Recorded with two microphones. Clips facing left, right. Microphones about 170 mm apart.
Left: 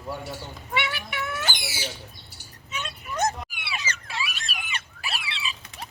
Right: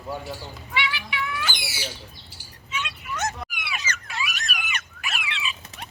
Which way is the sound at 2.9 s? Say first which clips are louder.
Left 5 dB; 35° left (ahead or behind).